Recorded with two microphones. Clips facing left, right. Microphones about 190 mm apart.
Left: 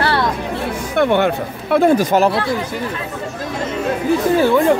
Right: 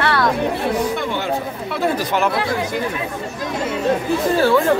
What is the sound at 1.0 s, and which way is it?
Speech, 60° left (ahead or behind).